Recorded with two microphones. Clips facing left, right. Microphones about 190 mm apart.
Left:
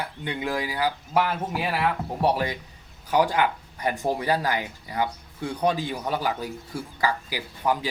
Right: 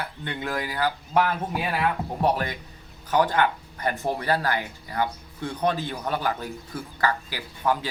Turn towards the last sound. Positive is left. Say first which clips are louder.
# even
turn(degrees=15)  # may be behind; listen again after turning